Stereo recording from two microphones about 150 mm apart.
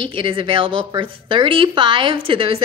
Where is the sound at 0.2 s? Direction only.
35° right (ahead or behind).